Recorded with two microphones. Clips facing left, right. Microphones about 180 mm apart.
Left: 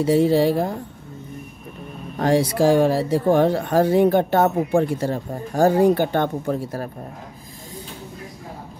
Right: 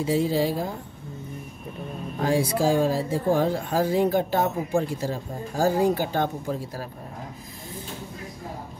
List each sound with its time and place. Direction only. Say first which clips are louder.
0.0 s speech: left 6 dB; 65° left (ahead or behind)
2.1 s speech: left 5 dB; 70° left (ahead or behind)